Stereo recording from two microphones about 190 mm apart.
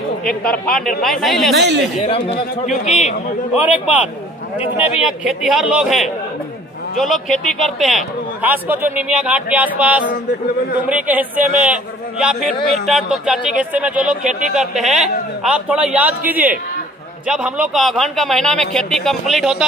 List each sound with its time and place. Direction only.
0.2 s a man's voice: 5° left (ahead or behind)
2.0 s speech: 30° left (ahead or behind)
3.5 s a man's voice: 10° right (ahead or behind)